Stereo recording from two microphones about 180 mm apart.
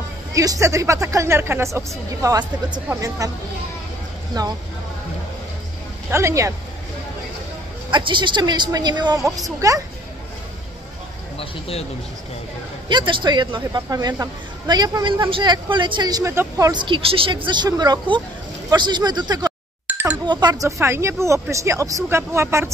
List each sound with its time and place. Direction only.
0.3 s speech: 20° right (ahead or behind)
4.4 s speech: 20° right (ahead or behind)
6.1 s speech: 15° right (ahead or behind)
7.9 s speech: 25° right (ahead or behind)
11.3 s speech: 30° left (ahead or behind)
12.8 s speech: 25° right (ahead or behind)
19.9 s music: 10° right (ahead or behind)
20.2 s speech: 25° right (ahead or behind)